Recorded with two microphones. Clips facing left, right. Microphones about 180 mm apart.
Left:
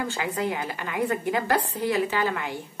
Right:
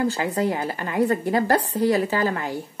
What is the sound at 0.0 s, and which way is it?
Speech, 40° right (ahead or behind).